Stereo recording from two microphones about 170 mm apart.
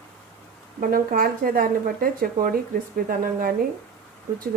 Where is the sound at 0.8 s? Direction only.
55° right (ahead or behind).